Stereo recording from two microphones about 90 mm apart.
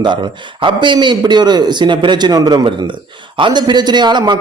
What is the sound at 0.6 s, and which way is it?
A man's voice, 60° right (ahead or behind).